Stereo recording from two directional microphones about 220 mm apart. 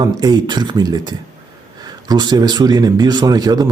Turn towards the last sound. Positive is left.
turn(degrees=-15)  # may be behind; listen again after turning